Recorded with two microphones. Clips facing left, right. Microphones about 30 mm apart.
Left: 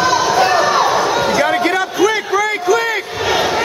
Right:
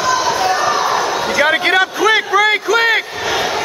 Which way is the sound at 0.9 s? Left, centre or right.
Centre.